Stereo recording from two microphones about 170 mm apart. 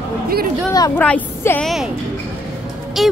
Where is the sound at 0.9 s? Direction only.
10° left (ahead or behind).